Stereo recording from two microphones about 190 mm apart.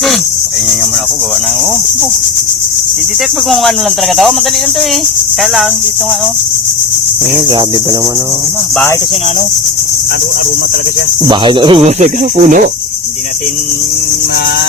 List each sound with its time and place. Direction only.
11.3 s speech: 25° right (ahead or behind); by 12.6 s 40° right (ahead or behind)